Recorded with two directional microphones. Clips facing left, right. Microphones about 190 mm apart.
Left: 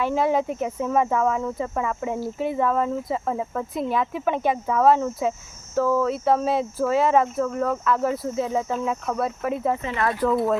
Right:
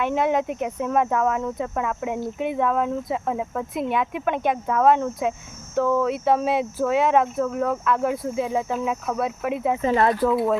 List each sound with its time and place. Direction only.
0.1 s speech: centre (ahead or behind)
9.8 s speech: 40° right (ahead or behind)
10.2 s speech: centre (ahead or behind)